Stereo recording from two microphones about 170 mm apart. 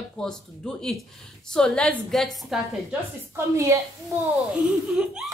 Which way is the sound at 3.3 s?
15° right (ahead or behind).